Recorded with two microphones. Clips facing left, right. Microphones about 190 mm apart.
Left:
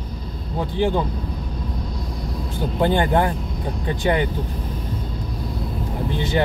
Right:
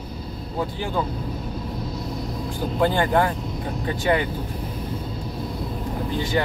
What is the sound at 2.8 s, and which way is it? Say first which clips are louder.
Speech: left 1 dB; 20° left (ahead or behind).